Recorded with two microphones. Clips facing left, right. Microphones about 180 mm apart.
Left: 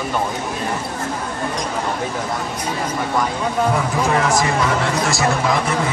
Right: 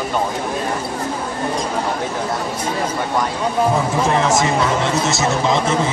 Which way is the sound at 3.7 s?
25° right (ahead or behind).